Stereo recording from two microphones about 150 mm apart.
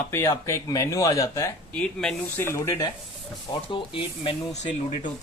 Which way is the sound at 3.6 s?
35° left (ahead or behind).